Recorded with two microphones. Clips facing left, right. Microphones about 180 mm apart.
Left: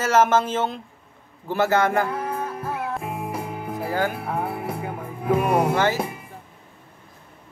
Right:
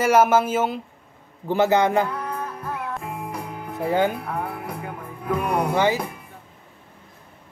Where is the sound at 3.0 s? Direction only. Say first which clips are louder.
Left 2 dB; 20° left (ahead or behind).